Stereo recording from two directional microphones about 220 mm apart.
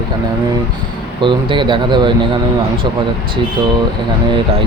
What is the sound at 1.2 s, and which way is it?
Speech, 20° right (ahead or behind).